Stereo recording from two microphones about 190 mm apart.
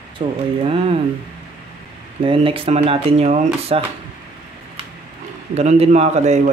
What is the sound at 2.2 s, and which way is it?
A man's voice, 30° right (ahead or behind).